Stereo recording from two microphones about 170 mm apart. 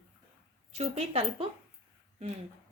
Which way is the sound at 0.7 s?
40° right (ahead or behind).